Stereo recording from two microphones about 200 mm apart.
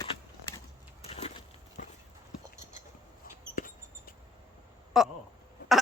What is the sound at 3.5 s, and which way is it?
Mouse, 45° left (ahead or behind).